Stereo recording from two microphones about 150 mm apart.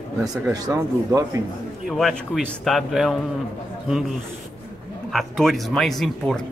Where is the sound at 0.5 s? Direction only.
25° right (ahead or behind).